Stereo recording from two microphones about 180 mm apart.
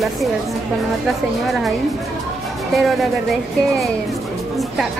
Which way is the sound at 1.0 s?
Centre (ahead or behind).